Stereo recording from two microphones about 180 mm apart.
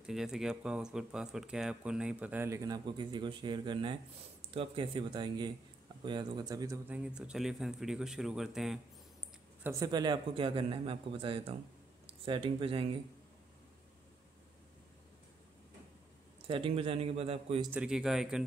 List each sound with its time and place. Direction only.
0.0 s a man's voice: centre (ahead or behind); by 6.8 s 20° right (ahead or behind)
6.9 s speech: 5° right (ahead or behind)
9.6 s a man's voice: 20° right (ahead or behind)
16.4 s a man's voice: 30° right (ahead or behind)
17.6 s speech: 5° right (ahead or behind)